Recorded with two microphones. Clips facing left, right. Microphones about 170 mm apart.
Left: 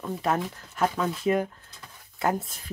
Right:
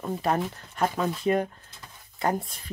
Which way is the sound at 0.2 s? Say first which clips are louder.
Even; centre (ahead or behind).